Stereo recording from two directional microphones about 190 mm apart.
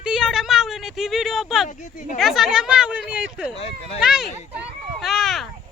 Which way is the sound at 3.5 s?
30° left (ahead or behind).